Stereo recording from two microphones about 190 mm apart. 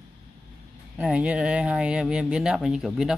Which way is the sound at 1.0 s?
5° right (ahead or behind).